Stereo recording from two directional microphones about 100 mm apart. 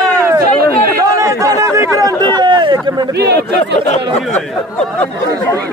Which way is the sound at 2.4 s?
50° right (ahead or behind).